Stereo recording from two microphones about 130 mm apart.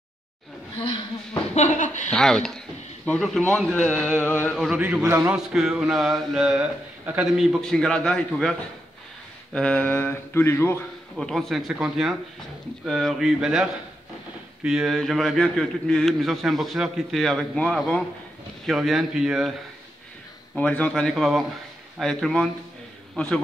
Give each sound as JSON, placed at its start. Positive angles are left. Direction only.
{"t": 0.7, "sound": "a woman's voice", "side_deg": 40}
{"t": 1.5, "sound": "speech", "side_deg": 60}
{"t": 2.0, "sound": "a man's voice", "side_deg": 5}
{"t": 4.5, "sound": "a man's voice", "side_deg": -5}
{"t": 5.5, "sound": "a man's voice", "side_deg": -5}
{"t": 11.1, "sound": "a man's voice", "side_deg": 5}
{"t": 20.5, "sound": "a man's voice", "side_deg": 10}